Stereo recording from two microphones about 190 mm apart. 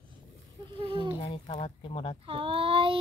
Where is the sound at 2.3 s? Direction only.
30° right (ahead or behind).